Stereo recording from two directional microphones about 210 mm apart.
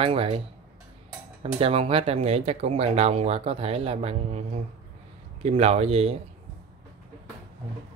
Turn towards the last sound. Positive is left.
turn(degrees=-30)  # may be behind; listen again after turning